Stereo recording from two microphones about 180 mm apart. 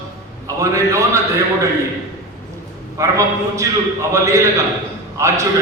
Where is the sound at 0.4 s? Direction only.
15° right (ahead or behind).